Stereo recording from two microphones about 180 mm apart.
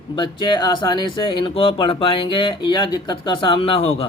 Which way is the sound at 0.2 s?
25° left (ahead or behind).